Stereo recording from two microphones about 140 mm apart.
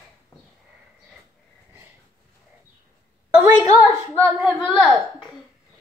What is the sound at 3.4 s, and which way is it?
Speech, 20° right (ahead or behind).